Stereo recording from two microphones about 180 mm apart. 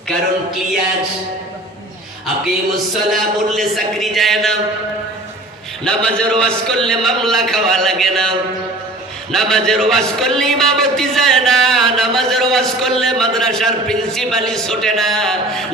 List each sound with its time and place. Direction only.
2.7 s a man's voice: centre (ahead or behind)
5.8 s a man's voice: 5° left (ahead or behind)